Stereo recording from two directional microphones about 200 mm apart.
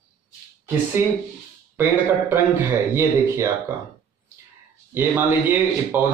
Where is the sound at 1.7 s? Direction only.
10° right (ahead or behind).